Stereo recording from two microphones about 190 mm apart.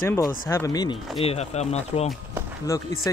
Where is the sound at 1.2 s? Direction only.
35° left (ahead or behind).